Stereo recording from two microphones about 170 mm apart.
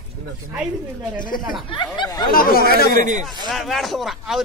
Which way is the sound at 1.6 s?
30° left (ahead or behind).